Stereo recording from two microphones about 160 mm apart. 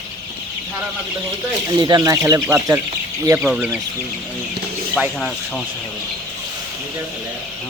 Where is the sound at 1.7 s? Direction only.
25° right (ahead or behind).